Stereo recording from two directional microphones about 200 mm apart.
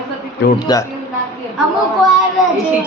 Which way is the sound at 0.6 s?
20° left (ahead or behind).